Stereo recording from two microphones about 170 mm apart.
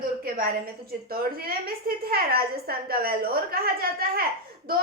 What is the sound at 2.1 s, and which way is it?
A woman's voice, 65° right (ahead or behind).